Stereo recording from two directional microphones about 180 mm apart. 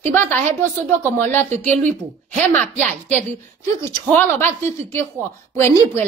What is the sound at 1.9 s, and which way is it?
Speech, 40° right (ahead or behind).